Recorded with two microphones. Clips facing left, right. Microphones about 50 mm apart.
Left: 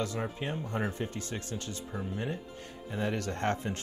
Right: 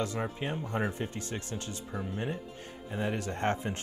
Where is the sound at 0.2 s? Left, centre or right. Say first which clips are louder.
Right 1 dB; centre.